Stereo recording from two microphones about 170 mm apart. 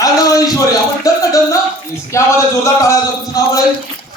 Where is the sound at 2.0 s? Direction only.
15° left (ahead or behind).